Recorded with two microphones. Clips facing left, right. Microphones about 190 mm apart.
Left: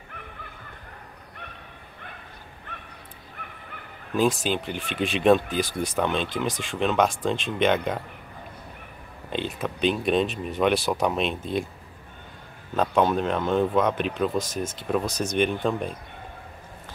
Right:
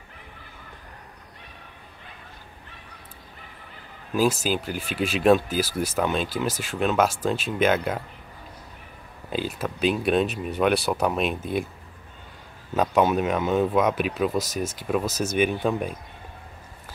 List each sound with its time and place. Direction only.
3.4 s bow-wow: 65° left (ahead or behind)
4.1 s speech: 5° right (ahead or behind)
9.3 s speech: 5° right (ahead or behind)
12.7 s speech: 5° right (ahead or behind)